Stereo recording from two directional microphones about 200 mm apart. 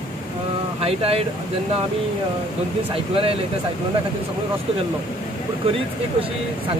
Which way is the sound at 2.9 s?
30° right (ahead or behind).